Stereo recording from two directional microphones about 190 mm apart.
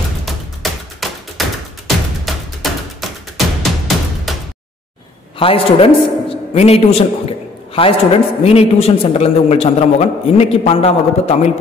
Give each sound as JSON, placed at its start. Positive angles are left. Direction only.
{"t": 0.2, "sound": "tap", "side_deg": 0}
{"t": 2.2, "sound": "music", "side_deg": 0}
{"t": 5.4, "sound": "a man's voice", "side_deg": 30}